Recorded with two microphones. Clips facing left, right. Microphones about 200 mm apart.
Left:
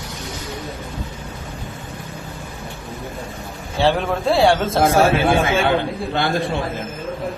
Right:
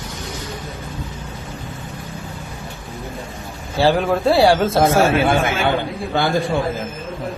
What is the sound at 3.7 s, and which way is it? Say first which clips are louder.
A man's voice: right 2 dB; centre (ahead or behind).